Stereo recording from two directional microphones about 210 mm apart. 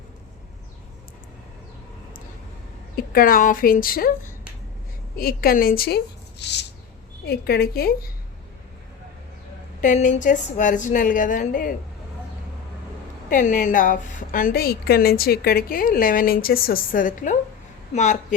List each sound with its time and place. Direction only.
2.9 s a woman's voice: 45° left (ahead or behind)
5.1 s a woman's voice: 45° left (ahead or behind)
6.4 s a sound: 55° left (ahead or behind)
7.3 s a woman's voice: 50° left (ahead or behind)
9.8 s a woman's voice: 35° left (ahead or behind)
13.3 s a woman's voice: 40° left (ahead or behind)